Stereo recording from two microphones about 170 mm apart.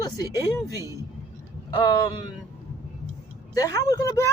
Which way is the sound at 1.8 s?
25° left (ahead or behind).